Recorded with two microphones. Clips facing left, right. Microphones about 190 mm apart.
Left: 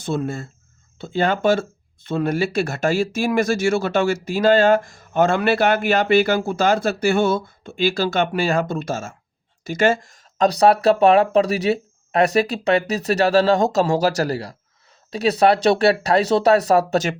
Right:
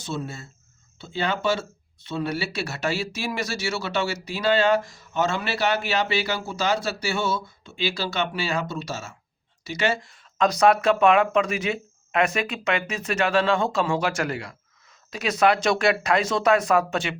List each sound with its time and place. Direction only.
0.0 s speech: 55° left (ahead or behind)